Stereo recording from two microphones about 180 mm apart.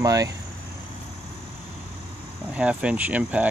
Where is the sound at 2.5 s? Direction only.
5° right (ahead or behind).